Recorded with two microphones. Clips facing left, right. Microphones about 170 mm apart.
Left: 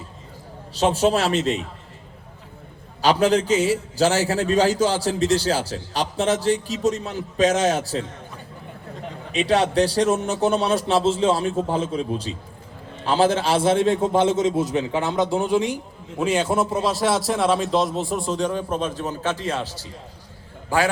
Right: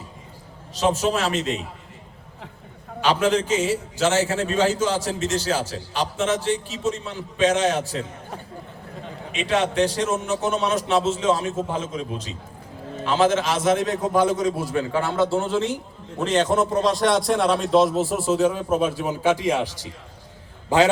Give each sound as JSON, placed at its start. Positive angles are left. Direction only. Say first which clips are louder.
{"t": 0.9, "sound": "a man's voice", "louder": "left 3 dB", "side_deg": 35}
{"t": 3.0, "sound": "a man's voice", "louder": "left 2 dB", "side_deg": 35}
{"t": 9.3, "sound": "a man's voice", "louder": "left 3 dB", "side_deg": 35}